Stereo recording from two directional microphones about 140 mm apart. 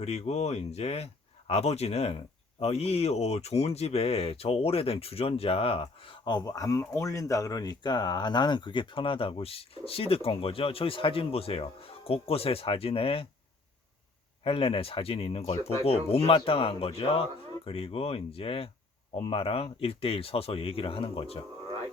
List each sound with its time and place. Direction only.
0.0 s speech: 50° left (ahead or behind)
14.4 s speech: 40° left (ahead or behind)